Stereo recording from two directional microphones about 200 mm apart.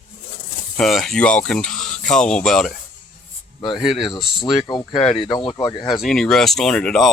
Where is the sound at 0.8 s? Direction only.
Centre (ahead or behind).